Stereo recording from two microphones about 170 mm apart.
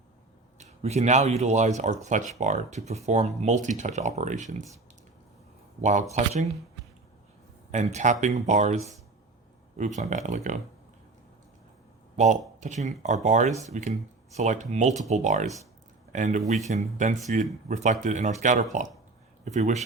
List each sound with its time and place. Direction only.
0.6 s speech: 40° right (ahead or behind)
5.8 s speech: 45° right (ahead or behind)
7.7 s speech: 40° right (ahead or behind)
12.1 s speech: 45° right (ahead or behind)